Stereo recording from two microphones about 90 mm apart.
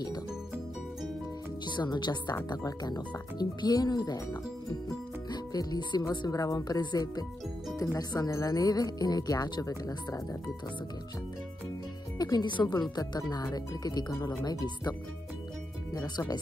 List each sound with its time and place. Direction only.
1.7 s speech: 55° left (ahead or behind)
6.0 s speech: 40° left (ahead or behind)
12.2 s speech: 50° left (ahead or behind)